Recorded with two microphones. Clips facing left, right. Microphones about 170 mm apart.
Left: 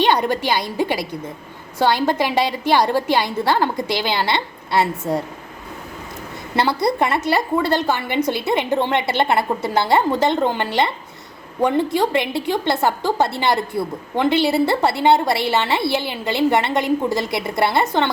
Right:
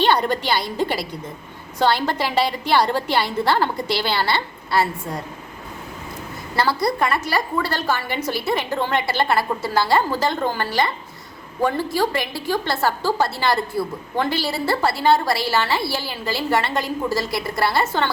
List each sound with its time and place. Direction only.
0.0 s a woman's voice: 15° left (ahead or behind)
6.6 s a woman's voice: 25° left (ahead or behind)